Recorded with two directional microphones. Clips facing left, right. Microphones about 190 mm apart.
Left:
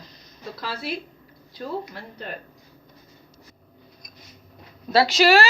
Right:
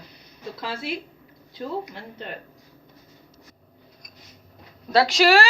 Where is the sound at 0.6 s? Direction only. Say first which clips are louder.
Even; 25° right (ahead or behind).